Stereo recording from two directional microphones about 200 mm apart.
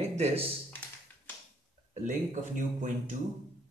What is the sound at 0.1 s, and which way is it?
Speech, 30° right (ahead or behind).